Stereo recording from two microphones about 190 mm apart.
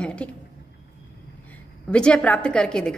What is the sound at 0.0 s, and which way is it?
Speech, 5° left (ahead or behind).